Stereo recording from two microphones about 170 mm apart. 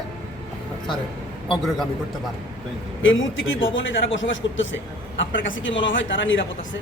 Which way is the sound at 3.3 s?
90° left.